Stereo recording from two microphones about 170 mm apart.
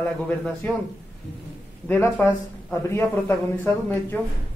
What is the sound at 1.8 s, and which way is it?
Speech, 15° left (ahead or behind).